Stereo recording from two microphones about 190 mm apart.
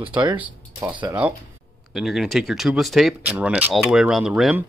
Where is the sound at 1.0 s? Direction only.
10° right (ahead or behind).